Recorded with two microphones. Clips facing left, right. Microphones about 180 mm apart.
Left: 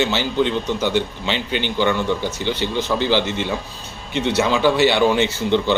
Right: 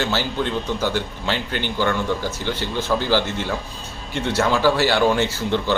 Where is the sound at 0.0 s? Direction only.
20° left (ahead or behind).